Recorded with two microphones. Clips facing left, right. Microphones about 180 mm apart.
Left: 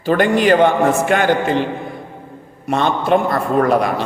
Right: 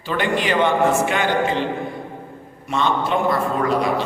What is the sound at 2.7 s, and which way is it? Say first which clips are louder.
A man's voice: left 5 dB; 55° left (ahead or behind).